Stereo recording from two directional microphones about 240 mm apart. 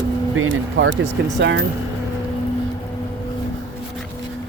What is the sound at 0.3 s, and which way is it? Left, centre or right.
Speech, right.